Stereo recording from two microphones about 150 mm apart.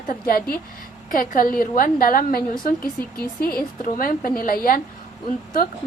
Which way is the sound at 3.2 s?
85° left.